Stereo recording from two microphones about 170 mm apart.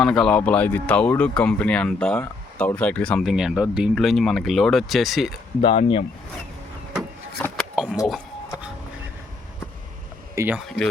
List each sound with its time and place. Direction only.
0.0 s speech: 5° left (ahead or behind)
5.6 s speech: 35° left (ahead or behind)
7.4 s a sound: 5° left (ahead or behind)
10.3 s speech: 15° right (ahead or behind)